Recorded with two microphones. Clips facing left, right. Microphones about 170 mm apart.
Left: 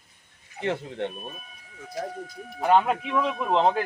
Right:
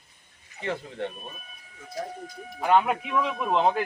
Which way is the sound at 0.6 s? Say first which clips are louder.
Left 3 dB; 60° left (ahead or behind).